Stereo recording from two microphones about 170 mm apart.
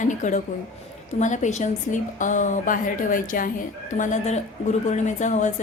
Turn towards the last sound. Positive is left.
turn(degrees=45)  # may be behind; listen again after turning